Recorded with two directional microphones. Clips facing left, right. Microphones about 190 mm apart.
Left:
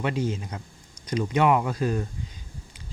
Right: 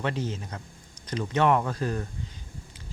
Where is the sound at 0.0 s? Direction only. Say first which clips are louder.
Left 3 dB; 10° left (ahead or behind).